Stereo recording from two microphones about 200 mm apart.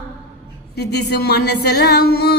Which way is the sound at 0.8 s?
55° left (ahead or behind).